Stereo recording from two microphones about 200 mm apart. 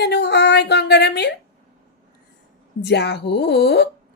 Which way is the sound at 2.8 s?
55° left (ahead or behind).